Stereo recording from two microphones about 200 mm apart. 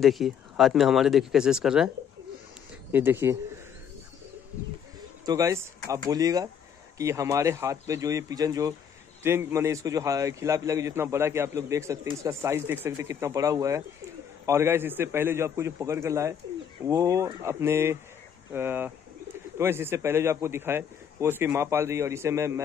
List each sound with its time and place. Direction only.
0.0 s speech: centre (ahead or behind)
2.9 s a man's voice: 10° right (ahead or behind)
5.2 s a man's voice: 15° right (ahead or behind)